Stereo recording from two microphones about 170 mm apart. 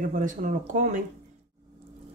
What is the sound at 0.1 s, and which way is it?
Speech, 50° right (ahead or behind).